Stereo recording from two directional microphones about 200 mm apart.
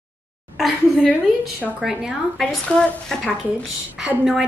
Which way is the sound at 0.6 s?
Centre (ahead or behind).